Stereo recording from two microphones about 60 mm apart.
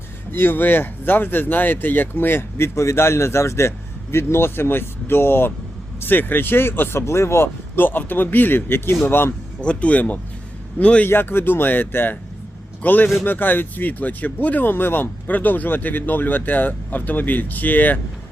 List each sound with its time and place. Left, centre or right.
0.3 s speech: left
9.6 s speech: left
11.0 s a man's voice: left